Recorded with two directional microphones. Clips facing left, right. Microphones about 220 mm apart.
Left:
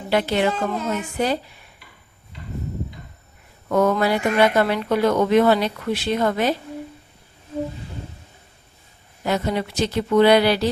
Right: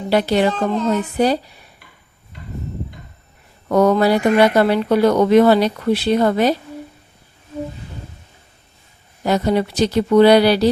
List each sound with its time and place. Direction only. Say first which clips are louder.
0.1 s speech: right 4 dB; 35° right (ahead or behind)
0.5 s a woman's voice: right 6 dB; 10° left (ahead or behind)
3.7 s speech: right 5 dB; 35° right (ahead or behind)
9.2 s speech: right 5 dB; 35° right (ahead or behind)